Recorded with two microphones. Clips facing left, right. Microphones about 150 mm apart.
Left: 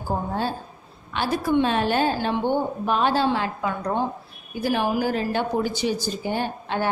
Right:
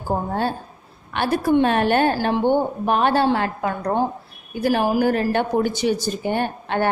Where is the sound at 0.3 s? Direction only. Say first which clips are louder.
Right 3 dB; 55° right (ahead or behind).